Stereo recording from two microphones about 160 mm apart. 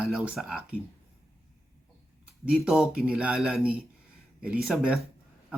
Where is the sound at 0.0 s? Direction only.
5° right (ahead or behind).